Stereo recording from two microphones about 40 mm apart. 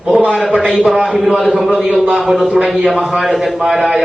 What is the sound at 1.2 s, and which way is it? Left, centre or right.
A man's voice, centre.